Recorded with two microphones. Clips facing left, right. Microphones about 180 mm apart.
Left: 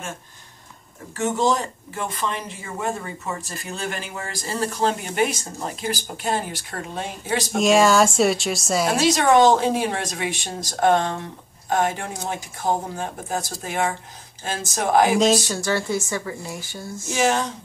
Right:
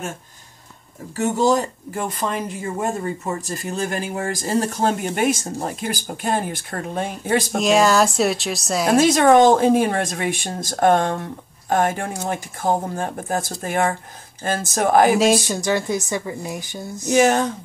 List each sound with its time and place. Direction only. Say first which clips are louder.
1.1 s a woman's voice: right 3 dB; 40° right (ahead or behind)
7.5 s speech: left 1 dB; centre (ahead or behind)
8.9 s a woman's voice: right 5 dB; 50° right (ahead or behind)
15.1 s speech: right 1 dB; 15° right (ahead or behind)
17.1 s a woman's voice: right 5 dB; 50° right (ahead or behind)